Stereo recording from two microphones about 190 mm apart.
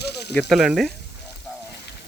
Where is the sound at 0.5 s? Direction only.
Centre (ahead or behind).